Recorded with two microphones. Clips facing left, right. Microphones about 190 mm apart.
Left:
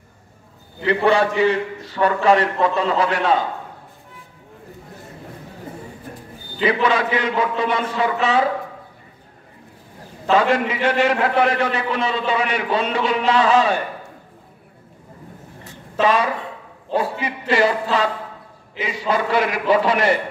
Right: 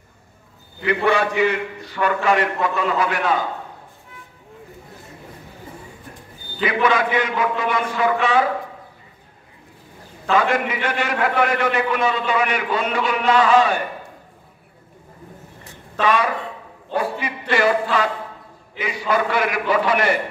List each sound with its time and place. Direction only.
0.8 s a man's voice: 30° left (ahead or behind)
6.6 s a man's voice: 30° left (ahead or behind)
10.3 s a man's voice: 30° left (ahead or behind)
16.9 s a man's voice: 30° left (ahead or behind)